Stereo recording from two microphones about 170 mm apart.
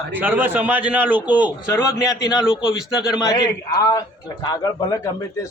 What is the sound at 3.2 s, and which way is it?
A man's voice, 20° left (ahead or behind).